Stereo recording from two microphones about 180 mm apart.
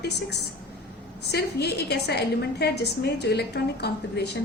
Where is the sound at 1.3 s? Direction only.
65° left (ahead or behind).